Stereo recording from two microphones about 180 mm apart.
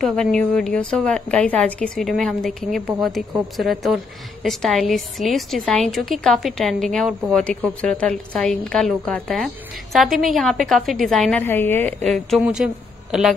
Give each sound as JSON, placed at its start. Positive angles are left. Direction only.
{"t": 0.0, "sound": "a woman's voice", "side_deg": 5}